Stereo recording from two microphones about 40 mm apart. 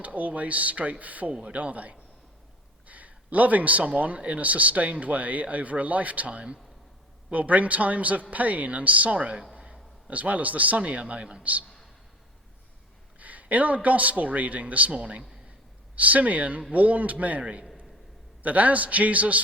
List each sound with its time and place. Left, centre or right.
0.0 s speech: right
1.3 s a man's voice: right
13.1 s a man's voice: right
16.0 s speech: right